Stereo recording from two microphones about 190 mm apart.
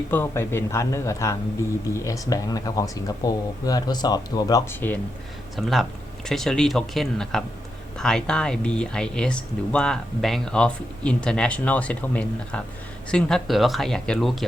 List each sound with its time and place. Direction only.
0.1 s speech: 10° left (ahead or behind)
5.5 s speech: centre (ahead or behind)